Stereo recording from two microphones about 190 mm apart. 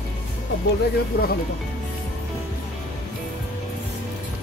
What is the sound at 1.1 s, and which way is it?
Speech, 55° left (ahead or behind).